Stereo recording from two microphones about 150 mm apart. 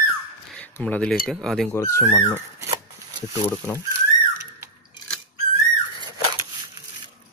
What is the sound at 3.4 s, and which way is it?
Speech, 15° left (ahead or behind).